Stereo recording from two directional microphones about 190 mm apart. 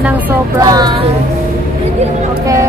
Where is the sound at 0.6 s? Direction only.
20° right (ahead or behind).